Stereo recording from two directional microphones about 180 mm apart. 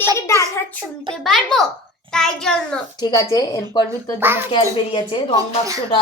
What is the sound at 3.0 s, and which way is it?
Speech, 20° left (ahead or behind).